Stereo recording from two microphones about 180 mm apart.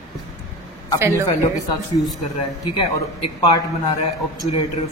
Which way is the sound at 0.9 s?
15° right (ahead or behind).